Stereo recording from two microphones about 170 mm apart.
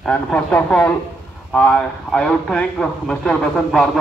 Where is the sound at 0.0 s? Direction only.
5° left (ahead or behind).